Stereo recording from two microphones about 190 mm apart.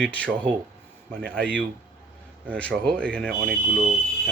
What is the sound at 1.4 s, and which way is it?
Speech, 5° left (ahead or behind).